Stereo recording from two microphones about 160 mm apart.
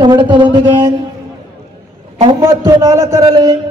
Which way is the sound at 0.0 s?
30° right (ahead or behind).